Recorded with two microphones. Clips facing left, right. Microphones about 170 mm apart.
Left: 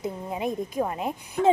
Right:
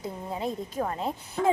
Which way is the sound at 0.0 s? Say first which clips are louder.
Left 3 dB; 15° left (ahead or behind).